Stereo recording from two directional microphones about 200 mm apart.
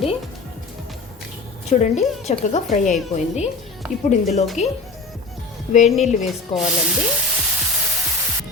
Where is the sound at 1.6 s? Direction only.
35° left (ahead or behind).